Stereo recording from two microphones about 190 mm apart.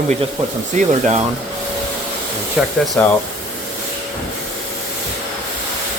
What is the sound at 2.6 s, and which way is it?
Speech, 5° right (ahead or behind).